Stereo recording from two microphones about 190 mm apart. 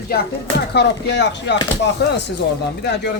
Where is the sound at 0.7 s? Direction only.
65° left (ahead or behind).